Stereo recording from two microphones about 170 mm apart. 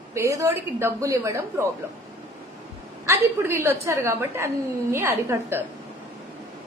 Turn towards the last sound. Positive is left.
turn(degrees=-15)  # may be behind; listen again after turning